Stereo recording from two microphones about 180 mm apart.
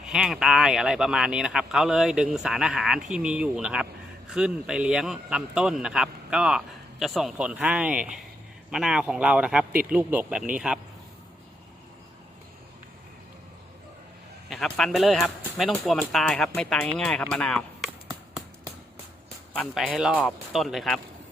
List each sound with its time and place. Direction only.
0.0 s speech: centre (ahead or behind)
14.5 s speech: centre (ahead or behind)
18.1 s a sound: 20° right (ahead or behind)
19.5 s speech: 5° right (ahead or behind)